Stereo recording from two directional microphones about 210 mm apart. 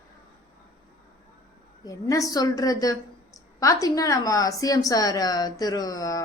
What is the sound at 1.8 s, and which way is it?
A woman's voice, 15° left (ahead or behind).